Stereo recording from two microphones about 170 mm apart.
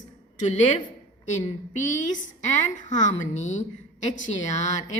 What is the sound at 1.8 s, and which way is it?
Speech, 45° left (ahead or behind).